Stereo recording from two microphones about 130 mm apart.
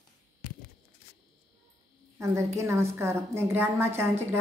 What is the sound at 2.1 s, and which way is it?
A woman's voice, 20° right (ahead or behind).